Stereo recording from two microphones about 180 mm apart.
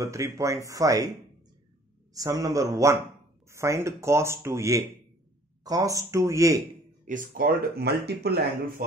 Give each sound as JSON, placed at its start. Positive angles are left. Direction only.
{"t": 0.0, "sound": "speech", "side_deg": -15}
{"t": 2.1, "sound": "speech", "side_deg": -20}
{"t": 7.1, "sound": "speech", "side_deg": -50}